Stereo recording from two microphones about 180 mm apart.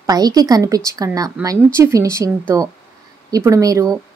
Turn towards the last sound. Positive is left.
turn(degrees=-20)  # may be behind; listen again after turning